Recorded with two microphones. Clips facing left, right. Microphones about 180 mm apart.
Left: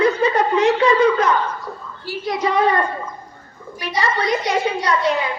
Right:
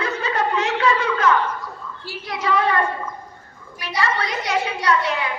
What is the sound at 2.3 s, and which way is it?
Speech, 35° left (ahead or behind).